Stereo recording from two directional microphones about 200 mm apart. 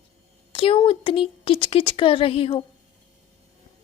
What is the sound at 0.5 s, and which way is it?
A woman's voice, 25° left (ahead or behind).